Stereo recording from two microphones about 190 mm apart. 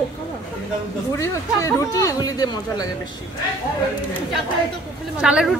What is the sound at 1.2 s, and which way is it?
Speech, 15° left (ahead or behind).